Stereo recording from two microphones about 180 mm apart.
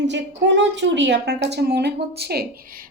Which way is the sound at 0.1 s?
80° right.